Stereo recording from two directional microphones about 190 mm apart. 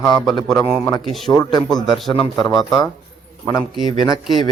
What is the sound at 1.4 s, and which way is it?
A man's voice, 20° left (ahead or behind).